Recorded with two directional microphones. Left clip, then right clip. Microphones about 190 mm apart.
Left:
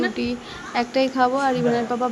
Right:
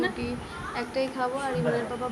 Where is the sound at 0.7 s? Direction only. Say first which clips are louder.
Left 9 dB; 40° left (ahead or behind).